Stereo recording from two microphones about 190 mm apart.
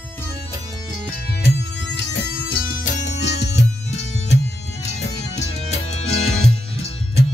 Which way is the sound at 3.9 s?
35° left (ahead or behind).